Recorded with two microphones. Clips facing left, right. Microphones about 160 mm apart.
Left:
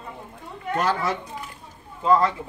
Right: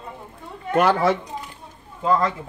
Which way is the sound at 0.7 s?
65° right (ahead or behind).